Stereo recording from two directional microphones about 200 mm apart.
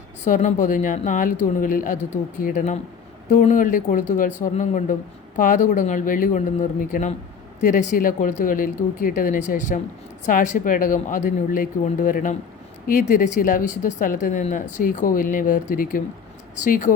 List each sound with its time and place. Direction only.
0.3 s speech: 40° left (ahead or behind)